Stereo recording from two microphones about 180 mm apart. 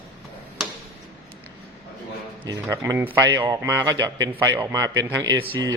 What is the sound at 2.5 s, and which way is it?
A man's voice, 20° right (ahead or behind).